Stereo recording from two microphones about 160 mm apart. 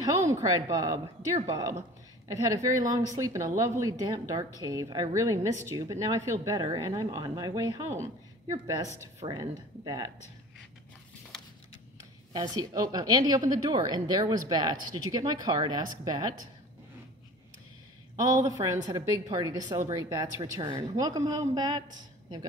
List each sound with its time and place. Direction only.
0.0 s a woman's voice: 20° right (ahead or behind)
12.3 s a woman's voice: 25° right (ahead or behind)
18.1 s a woman's voice: 25° right (ahead or behind)